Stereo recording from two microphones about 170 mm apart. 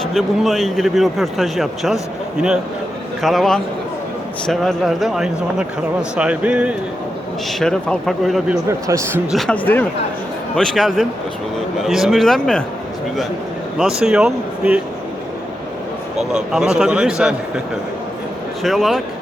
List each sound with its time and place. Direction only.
0.0 s speech: centre (ahead or behind)
3.2 s speech: centre (ahead or behind)
7.6 s speech: 5° left (ahead or behind)
8.9 s a man's voice: 15° right (ahead or behind)
9.3 s speech: 5° left (ahead or behind)
13.7 s speech: 5° right (ahead or behind)
16.1 s speech: 5° right (ahead or behind)
18.6 s speech: centre (ahead or behind)